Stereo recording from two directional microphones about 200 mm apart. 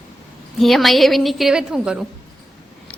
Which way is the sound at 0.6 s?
Centre (ahead or behind).